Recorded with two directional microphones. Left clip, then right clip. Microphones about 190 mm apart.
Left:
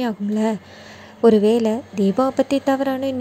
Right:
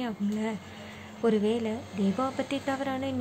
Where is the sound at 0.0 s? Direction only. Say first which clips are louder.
Left 11 dB; 30° left (ahead or behind).